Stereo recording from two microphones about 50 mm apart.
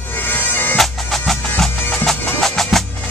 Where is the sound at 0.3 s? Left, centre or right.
Left.